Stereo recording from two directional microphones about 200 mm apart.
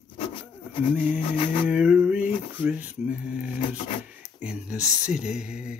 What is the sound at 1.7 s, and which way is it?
Male singing, 5° right (ahead or behind).